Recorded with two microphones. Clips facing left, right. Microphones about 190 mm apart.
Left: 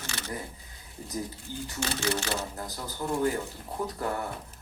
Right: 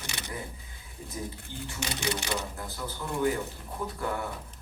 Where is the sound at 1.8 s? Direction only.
15° right (ahead or behind).